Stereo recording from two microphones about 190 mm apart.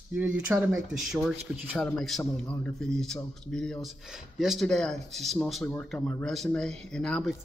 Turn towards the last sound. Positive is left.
turn(degrees=5)  # may be behind; listen again after turning